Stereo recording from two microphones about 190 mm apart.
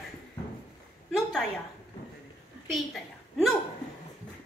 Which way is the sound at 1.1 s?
Centre (ahead or behind).